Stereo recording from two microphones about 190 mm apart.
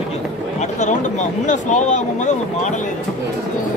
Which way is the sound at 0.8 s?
40° left (ahead or behind).